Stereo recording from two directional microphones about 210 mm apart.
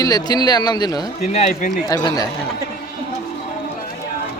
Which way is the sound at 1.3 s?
35° left (ahead or behind).